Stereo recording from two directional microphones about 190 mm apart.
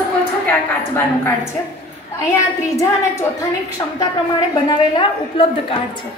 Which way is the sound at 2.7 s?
15° left (ahead or behind).